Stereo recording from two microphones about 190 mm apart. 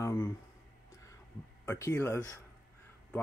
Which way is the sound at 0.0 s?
15° left (ahead or behind).